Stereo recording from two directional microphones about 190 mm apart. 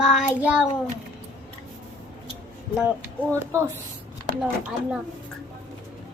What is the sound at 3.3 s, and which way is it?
Speech, 15° right (ahead or behind).